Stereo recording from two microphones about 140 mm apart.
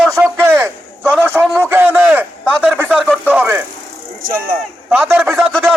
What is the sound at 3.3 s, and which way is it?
Vehicle, 15° right (ahead or behind).